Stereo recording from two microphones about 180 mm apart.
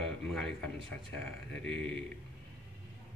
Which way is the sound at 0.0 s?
5° left (ahead or behind).